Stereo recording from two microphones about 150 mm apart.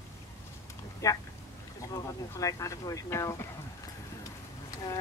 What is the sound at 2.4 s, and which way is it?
Speech, 20° left (ahead or behind).